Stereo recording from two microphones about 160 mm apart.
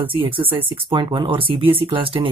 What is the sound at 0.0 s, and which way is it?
Speech, 35° right (ahead or behind).